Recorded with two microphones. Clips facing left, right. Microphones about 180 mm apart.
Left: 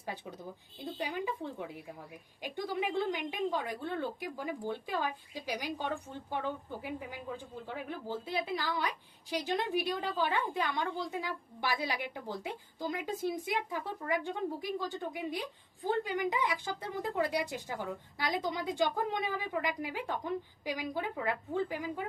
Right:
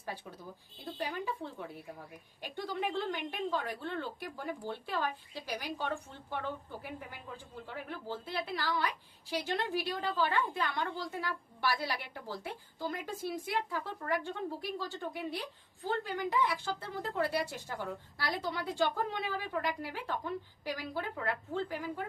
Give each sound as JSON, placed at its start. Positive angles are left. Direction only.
{"t": 0.9, "sound": "speech", "side_deg": 15}